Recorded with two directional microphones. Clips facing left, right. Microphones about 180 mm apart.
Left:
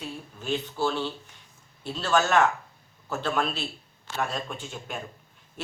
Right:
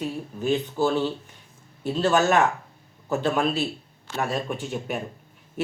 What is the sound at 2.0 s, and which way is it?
Speech, 15° right (ahead or behind).